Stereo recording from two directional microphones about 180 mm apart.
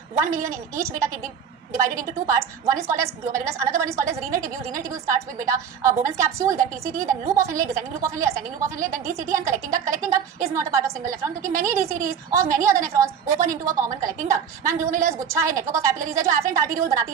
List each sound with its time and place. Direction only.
0.2 s a woman's voice: 15° right (ahead or behind)